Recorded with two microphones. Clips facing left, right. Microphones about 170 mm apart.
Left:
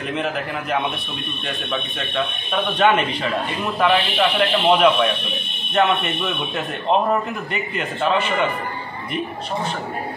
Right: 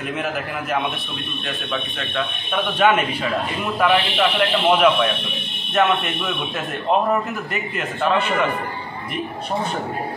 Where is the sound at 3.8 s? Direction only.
Centre (ahead or behind).